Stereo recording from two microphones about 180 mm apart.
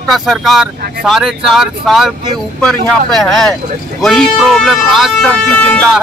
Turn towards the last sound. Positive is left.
turn(degrees=5)  # may be behind; listen again after turning